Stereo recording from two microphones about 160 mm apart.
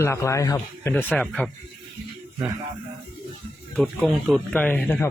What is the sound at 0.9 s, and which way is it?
Speech, 10° left (ahead or behind).